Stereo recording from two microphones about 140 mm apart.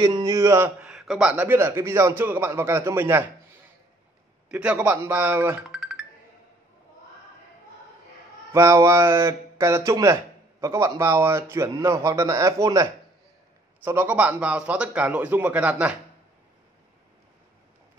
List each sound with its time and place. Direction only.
0.2 s speech: 20° right (ahead or behind)
0.7 s a man's voice: 5° right (ahead or behind)
4.5 s a man's voice: 10° right (ahead or behind)
5.7 s music: centre (ahead or behind)
8.5 s speech: 20° right (ahead or behind)
13.8 s a man's voice: 15° right (ahead or behind)